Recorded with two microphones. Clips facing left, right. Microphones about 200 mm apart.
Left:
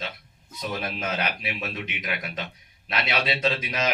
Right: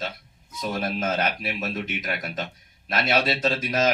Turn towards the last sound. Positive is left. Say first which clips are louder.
# right 3 dB
turn(degrees=-45)  # may be behind; listen again after turning